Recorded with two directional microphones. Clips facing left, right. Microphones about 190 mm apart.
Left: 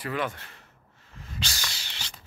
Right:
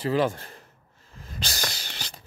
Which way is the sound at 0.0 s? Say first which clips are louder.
Right 7 dB; 30° right (ahead or behind).